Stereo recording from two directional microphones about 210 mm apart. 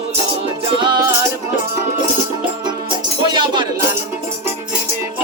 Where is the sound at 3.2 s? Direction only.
20° right (ahead or behind).